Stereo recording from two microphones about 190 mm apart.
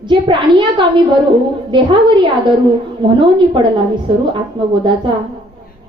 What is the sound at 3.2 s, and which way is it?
A woman's voice, 25° right (ahead or behind).